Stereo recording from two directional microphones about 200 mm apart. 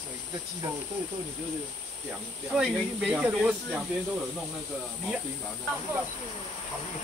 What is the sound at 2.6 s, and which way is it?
Speech, centre (ahead or behind).